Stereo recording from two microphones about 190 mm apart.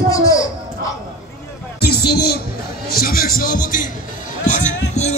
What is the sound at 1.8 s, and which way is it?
Music, 55° left (ahead or behind).